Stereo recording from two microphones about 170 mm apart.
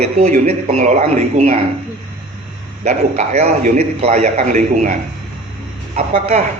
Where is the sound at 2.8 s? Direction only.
45° right (ahead or behind).